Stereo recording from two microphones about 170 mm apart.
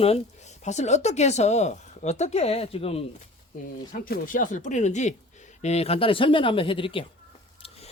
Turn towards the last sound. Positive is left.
turn(degrees=30)  # may be behind; listen again after turning